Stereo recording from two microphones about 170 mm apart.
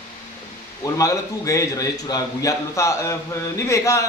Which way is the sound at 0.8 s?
20° left (ahead or behind).